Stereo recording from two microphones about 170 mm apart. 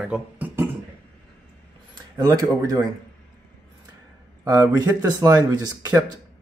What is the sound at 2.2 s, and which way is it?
Speech, 20° right (ahead or behind).